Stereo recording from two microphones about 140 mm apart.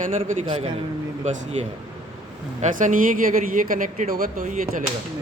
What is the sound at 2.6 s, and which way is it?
Speech, 65° right (ahead or behind).